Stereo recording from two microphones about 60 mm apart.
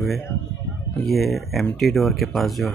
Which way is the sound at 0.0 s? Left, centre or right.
Centre.